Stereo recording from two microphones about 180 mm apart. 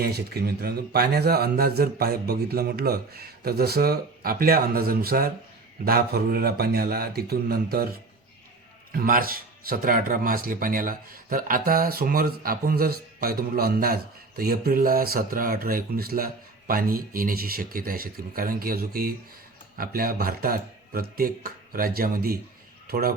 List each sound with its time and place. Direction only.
0.0 s speech: 60° right (ahead or behind)
8.9 s speech: 55° right (ahead or behind)